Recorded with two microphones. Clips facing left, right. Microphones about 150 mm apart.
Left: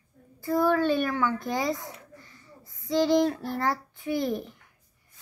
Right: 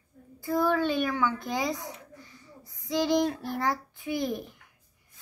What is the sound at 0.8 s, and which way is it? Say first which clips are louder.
A child's voice: left 2 dB; 10° right (ahead or behind).